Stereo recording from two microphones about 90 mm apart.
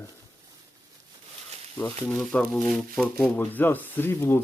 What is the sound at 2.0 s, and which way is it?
Speech, 10° left (ahead or behind).